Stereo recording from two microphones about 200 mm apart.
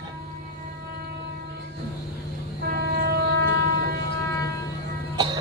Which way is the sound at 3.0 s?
50° right (ahead or behind).